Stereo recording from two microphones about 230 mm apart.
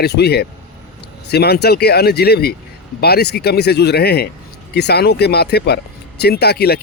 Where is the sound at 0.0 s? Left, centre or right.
Left.